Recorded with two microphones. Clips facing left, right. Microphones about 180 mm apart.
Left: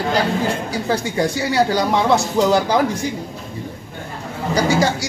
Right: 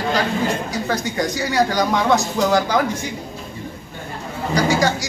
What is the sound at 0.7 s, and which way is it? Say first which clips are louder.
Speech: left 2 dB; 30° left (ahead or behind).